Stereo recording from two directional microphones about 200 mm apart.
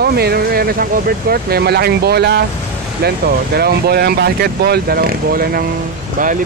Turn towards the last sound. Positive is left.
turn(degrees=-40)  # may be behind; listen again after turning